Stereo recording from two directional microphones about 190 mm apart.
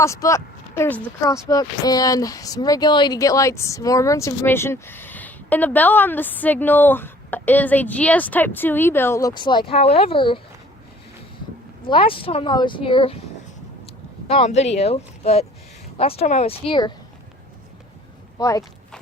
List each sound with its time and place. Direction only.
0.0 s speech: 15° left (ahead or behind)
11.9 s speech: 30° left (ahead or behind)
14.3 s speech: 35° left (ahead or behind)
18.3 s speech: 20° left (ahead or behind)